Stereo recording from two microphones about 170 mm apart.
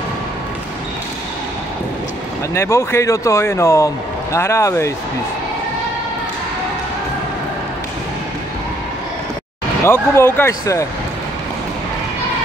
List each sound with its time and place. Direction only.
2.5 s a man's voice: 15° left (ahead or behind)
9.8 s a man's voice: 15° left (ahead or behind)